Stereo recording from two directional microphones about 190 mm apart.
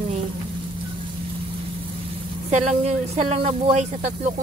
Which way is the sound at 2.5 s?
35° right (ahead or behind).